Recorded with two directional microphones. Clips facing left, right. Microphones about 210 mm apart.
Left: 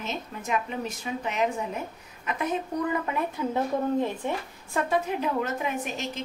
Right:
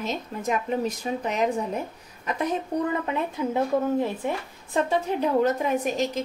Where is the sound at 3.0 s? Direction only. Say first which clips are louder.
Right 2 dB; 20° right (ahead or behind).